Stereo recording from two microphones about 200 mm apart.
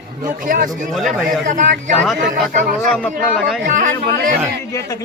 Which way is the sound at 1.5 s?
40° right (ahead or behind).